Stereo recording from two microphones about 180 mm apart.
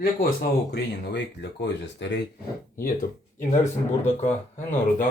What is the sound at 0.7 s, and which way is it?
Speech, 70° left (ahead or behind).